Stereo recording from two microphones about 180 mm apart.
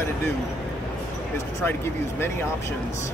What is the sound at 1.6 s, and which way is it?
Speech, 10° left (ahead or behind).